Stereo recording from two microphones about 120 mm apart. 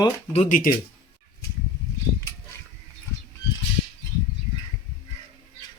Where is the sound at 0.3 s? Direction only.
90° left.